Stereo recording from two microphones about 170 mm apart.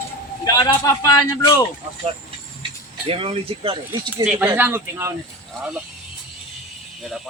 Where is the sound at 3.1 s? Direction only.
35° right (ahead or behind).